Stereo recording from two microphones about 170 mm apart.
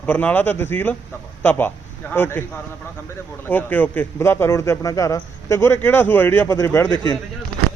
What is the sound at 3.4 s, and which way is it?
A man's voice, 10° left (ahead or behind).